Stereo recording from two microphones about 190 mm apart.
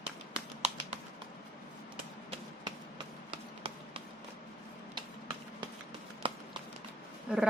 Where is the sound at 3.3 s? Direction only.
30° right (ahead or behind).